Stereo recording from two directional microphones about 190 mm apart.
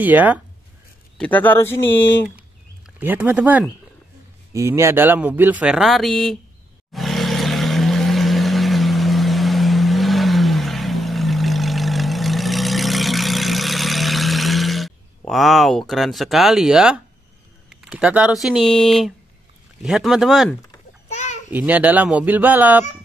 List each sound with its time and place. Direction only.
0.0 s speech: 10° right (ahead or behind)
1.1 s speech: 5° left (ahead or behind)
3.0 s speech: 10° right (ahead or behind)
6.9 s vehicle: centre (ahead or behind)
15.9 s speech: centre (ahead or behind)
21.1 s babbling: 40° left (ahead or behind)
21.5 s speech: 10° right (ahead or behind)